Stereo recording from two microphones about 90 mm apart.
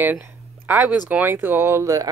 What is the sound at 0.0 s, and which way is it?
Speech, 20° right (ahead or behind).